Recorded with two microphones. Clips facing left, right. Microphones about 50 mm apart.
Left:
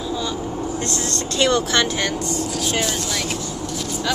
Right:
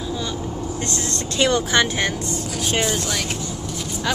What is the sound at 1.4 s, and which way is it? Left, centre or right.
Speech, centre.